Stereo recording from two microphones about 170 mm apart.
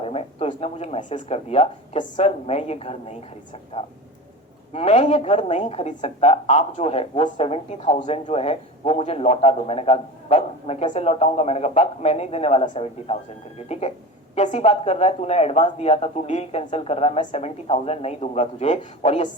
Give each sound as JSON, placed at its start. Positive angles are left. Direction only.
{"t": 0.0, "sound": "a woman's voice", "side_deg": 35}